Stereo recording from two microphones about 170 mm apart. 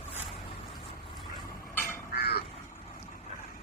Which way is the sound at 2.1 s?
70° left (ahead or behind).